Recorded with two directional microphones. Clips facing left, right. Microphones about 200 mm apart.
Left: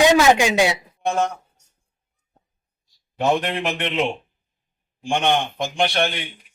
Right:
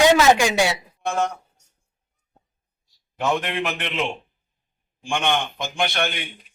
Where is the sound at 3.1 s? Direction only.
35° left (ahead or behind).